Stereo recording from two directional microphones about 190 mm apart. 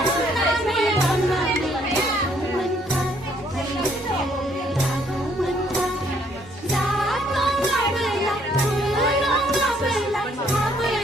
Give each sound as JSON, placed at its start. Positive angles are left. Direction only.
{"t": 0.3, "sound": "music", "side_deg": 0}
{"t": 7.1, "sound": "music", "side_deg": 0}
{"t": 9.0, "sound": "music", "side_deg": 0}